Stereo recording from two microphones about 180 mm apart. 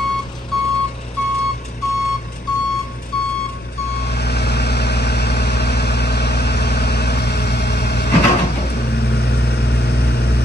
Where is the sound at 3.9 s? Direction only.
65° left (ahead or behind).